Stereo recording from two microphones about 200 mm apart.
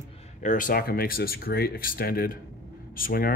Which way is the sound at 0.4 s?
40° left (ahead or behind).